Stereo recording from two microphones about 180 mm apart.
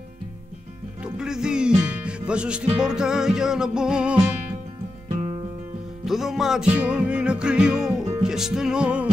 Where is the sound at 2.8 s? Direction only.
5° right (ahead or behind).